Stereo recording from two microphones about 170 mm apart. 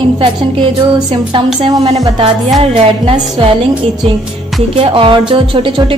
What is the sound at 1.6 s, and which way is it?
Music, 35° right (ahead or behind).